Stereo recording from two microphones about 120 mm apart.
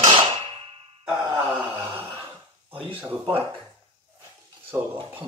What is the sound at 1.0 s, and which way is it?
Wail, 10° right (ahead or behind).